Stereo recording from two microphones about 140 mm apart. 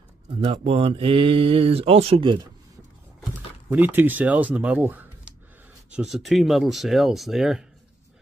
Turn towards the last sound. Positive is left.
turn(degrees=-5)  # may be behind; listen again after turning